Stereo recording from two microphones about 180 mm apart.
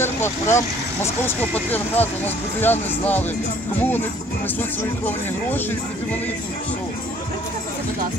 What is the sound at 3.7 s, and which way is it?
Speech, 10° left (ahead or behind).